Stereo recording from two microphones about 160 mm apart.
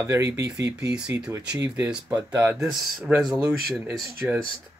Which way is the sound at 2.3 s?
20° right (ahead or behind).